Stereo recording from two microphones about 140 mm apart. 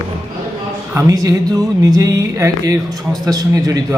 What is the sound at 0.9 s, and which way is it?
Speech, 25° right (ahead or behind).